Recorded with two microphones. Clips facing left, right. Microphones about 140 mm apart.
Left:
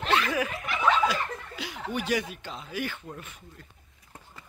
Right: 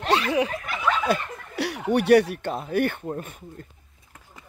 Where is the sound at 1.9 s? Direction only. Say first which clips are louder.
Right 12 dB; 65° right (ahead or behind).